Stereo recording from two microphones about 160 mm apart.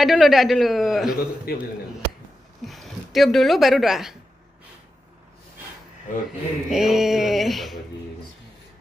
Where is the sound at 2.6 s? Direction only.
Centre (ahead or behind).